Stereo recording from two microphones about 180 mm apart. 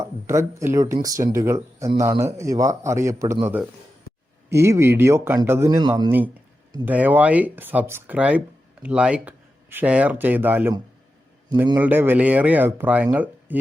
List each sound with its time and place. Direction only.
0.0 s a man's voice: 15° right (ahead or behind)